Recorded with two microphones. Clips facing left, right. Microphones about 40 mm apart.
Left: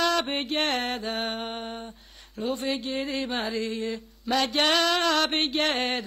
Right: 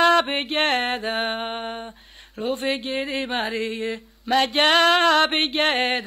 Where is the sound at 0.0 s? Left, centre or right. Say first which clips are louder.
Right 7 dB; right.